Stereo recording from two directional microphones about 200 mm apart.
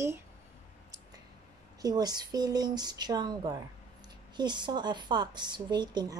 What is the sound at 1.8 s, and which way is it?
A woman's voice, 20° right (ahead or behind).